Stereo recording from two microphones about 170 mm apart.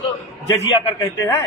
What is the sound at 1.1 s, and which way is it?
Speech, 20° left (ahead or behind).